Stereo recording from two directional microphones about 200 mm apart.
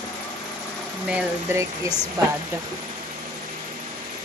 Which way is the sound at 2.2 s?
20° right (ahead or behind).